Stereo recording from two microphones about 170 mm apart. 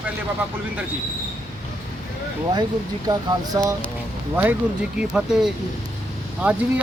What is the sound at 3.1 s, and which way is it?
Speech, 25° right (ahead or behind).